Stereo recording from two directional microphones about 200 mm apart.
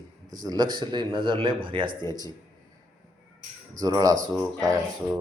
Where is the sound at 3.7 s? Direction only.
20° right (ahead or behind).